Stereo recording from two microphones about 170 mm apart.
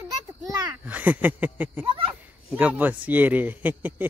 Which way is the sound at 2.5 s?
10° right (ahead or behind).